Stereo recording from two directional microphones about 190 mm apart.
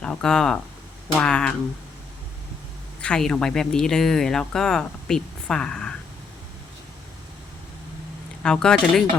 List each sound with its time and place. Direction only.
0.0 s speech: 5° left (ahead or behind)
3.0 s speech: 5° left (ahead or behind)
8.4 s speech: 5° left (ahead or behind)